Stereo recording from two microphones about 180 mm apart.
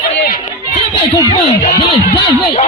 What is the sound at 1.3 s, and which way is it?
Speech, 35° left (ahead or behind).